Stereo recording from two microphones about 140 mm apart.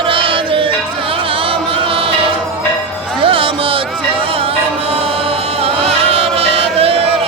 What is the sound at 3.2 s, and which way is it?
Music, 40° right (ahead or behind).